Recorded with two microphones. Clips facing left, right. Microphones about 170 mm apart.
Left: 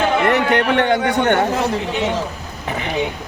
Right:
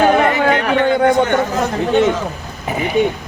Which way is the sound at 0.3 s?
65° left (ahead or behind).